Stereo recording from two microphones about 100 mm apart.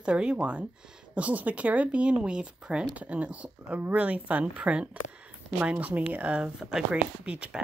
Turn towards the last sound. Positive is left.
turn(degrees=-10)  # may be behind; listen again after turning